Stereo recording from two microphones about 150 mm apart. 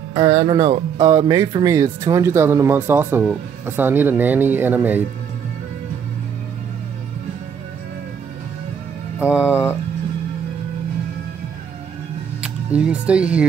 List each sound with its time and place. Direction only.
0.1 s speech: 25° right (ahead or behind)
9.2 s speech: 10° right (ahead or behind)
12.4 s speech: 10° right (ahead or behind)